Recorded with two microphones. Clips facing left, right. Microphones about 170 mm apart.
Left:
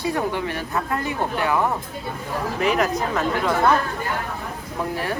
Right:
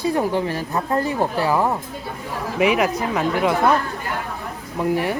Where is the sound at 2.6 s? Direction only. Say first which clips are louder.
Right 3 dB; 10° right (ahead or behind).